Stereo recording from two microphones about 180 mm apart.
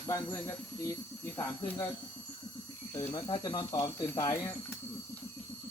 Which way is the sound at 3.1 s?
25° left (ahead or behind).